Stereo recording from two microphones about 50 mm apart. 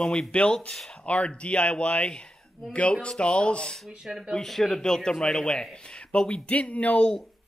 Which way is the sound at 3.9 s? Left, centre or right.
Centre.